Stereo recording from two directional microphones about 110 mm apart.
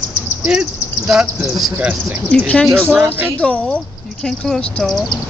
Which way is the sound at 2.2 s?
10° left (ahead or behind).